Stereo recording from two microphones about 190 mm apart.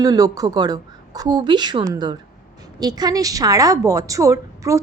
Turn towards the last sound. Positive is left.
turn(degrees=-15)  # may be behind; listen again after turning